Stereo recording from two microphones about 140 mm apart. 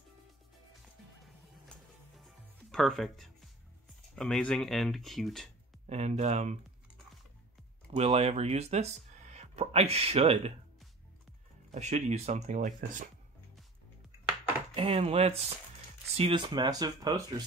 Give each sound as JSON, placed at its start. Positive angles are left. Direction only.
{"t": 1.2, "sound": "music", "side_deg": 0}
{"t": 4.1, "sound": "speech", "side_deg": 5}
{"t": 5.9, "sound": "speech", "side_deg": -50}
{"t": 7.9, "sound": "speech", "side_deg": -50}
{"t": 11.7, "sound": "speech", "side_deg": -55}
{"t": 14.8, "sound": "speech", "side_deg": -40}
{"t": 16.4, "sound": "speech", "side_deg": -30}